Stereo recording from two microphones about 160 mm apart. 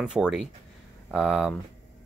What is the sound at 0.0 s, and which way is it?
Speech, 5° right (ahead or behind).